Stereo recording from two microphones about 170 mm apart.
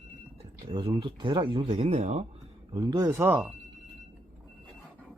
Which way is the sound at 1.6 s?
40° right (ahead or behind).